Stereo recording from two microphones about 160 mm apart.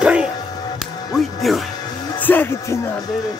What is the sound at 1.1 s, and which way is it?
Speech, centre (ahead or behind).